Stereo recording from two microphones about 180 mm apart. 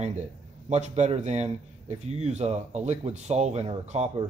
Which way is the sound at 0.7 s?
40° right (ahead or behind).